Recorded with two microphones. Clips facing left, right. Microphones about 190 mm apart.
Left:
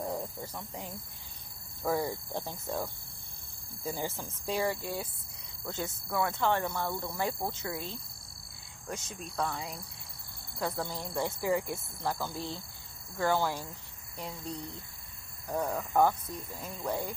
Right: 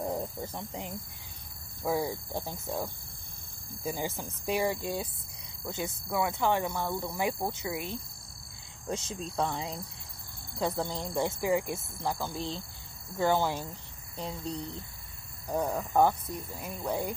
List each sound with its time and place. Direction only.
0.0 s snake: 20° right (ahead or behind)
0.4 s speech: 25° right (ahead or behind)
1.8 s speech: 10° right (ahead or behind)
8.8 s speech: 25° right (ahead or behind)
15.4 s speech: 15° right (ahead or behind)